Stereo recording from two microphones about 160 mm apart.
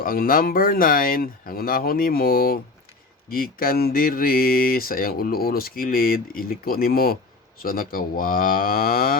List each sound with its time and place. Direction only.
0.0 s speech: 60° left (ahead or behind)